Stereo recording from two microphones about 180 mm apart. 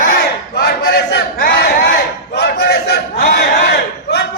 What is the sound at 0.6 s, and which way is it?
Battle cry, 60° left (ahead or behind).